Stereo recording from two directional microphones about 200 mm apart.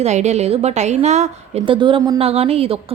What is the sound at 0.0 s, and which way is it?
A woman's voice, 35° right (ahead or behind).